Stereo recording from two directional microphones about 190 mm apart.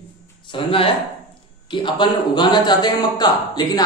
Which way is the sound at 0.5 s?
30° left (ahead or behind).